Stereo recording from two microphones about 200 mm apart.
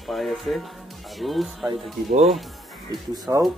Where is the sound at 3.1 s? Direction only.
20° right (ahead or behind).